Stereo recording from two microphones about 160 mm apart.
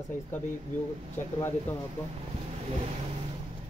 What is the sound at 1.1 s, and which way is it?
Speech, 15° left (ahead or behind).